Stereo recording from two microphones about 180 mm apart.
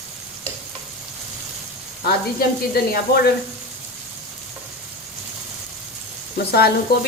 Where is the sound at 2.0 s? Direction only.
55° left (ahead or behind).